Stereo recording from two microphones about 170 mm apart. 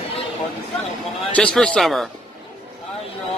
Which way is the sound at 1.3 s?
5° left (ahead or behind).